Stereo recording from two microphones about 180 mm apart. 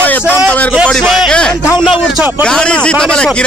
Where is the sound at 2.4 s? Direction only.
5° left (ahead or behind).